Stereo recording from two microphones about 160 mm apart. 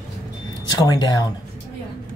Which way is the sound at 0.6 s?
25° left (ahead or behind).